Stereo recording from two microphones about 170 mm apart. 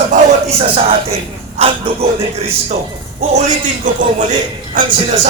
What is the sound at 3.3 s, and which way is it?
Speech, 50° right (ahead or behind).